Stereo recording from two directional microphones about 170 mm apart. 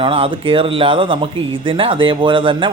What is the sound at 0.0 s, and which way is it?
Speech, 30° right (ahead or behind).